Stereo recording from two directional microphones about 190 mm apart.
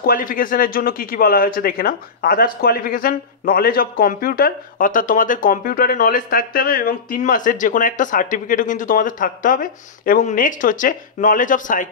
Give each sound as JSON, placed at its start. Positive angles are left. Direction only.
{"t": 0.0, "sound": "speech", "side_deg": 50}